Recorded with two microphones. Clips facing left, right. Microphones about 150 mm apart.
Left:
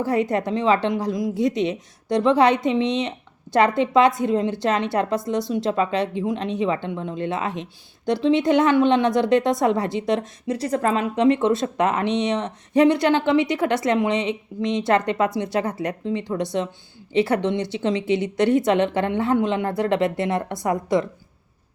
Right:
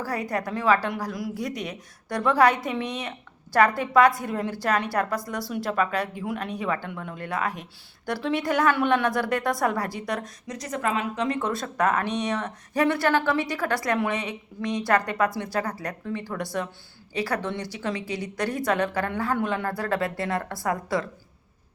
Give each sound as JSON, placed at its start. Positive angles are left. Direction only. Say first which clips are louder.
{"t": 0.0, "sound": "a woman's voice", "louder": "left 7 dB", "side_deg": 25}